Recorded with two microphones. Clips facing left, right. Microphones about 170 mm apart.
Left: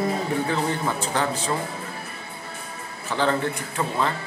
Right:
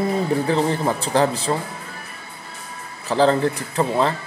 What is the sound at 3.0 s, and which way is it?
Speech, 35° right (ahead or behind).